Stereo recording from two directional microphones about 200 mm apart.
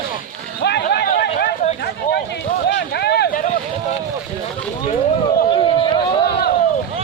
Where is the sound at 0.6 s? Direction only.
55° left (ahead or behind).